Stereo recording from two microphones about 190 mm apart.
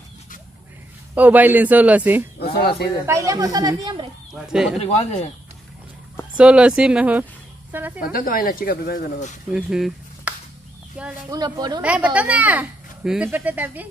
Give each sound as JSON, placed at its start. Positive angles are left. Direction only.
{"t": 1.1, "sound": "speech", "side_deg": -10}
{"t": 2.3, "sound": "speech", "side_deg": 55}
{"t": 3.1, "sound": "speech", "side_deg": -15}
{"t": 4.3, "sound": "speech", "side_deg": -5}
{"t": 4.7, "sound": "speech", "side_deg": 35}
{"t": 6.3, "sound": "speech", "side_deg": -5}
{"t": 8.0, "sound": "speech", "side_deg": 50}
{"t": 9.5, "sound": "speech", "side_deg": -5}
{"t": 11.3, "sound": "speech", "side_deg": -20}
{"t": 11.8, "sound": "speech", "side_deg": -5}